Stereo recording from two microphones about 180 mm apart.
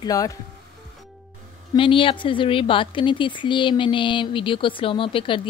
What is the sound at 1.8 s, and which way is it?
A woman's voice, 30° left (ahead or behind).